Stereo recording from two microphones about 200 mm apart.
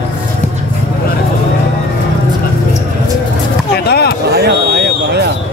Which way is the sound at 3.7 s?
55° left (ahead or behind).